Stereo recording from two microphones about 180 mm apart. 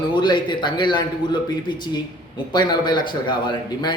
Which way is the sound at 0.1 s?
25° left (ahead or behind).